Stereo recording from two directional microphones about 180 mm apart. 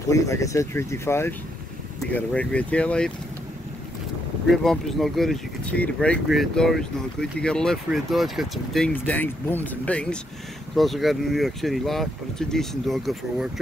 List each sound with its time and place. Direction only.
0.1 s speech: 15° left (ahead or behind)
4.5 s speech: centre (ahead or behind)